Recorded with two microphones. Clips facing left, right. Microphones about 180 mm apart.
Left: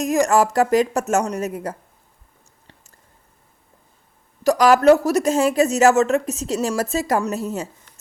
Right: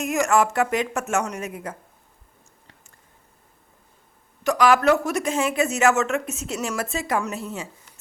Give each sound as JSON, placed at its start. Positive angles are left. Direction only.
{"t": 0.0, "sound": "speech", "side_deg": 35}
{"t": 4.4, "sound": "speech", "side_deg": 40}